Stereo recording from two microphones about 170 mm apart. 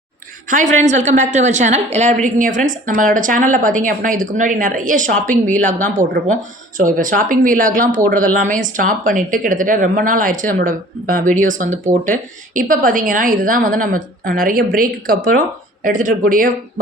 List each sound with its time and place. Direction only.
0.5 s a woman's voice: 45° right (ahead or behind)